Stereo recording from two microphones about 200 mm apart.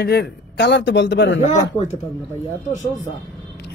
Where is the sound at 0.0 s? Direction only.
55° left (ahead or behind).